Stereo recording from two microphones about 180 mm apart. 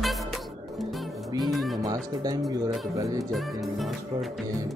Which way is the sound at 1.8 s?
20° right (ahead or behind).